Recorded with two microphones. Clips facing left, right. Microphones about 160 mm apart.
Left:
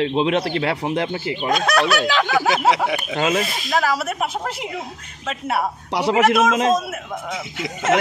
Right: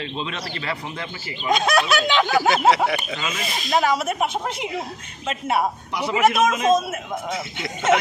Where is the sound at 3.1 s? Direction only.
65° left (ahead or behind).